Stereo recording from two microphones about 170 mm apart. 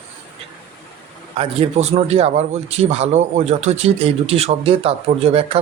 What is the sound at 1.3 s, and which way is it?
A man's voice, 35° right (ahead or behind).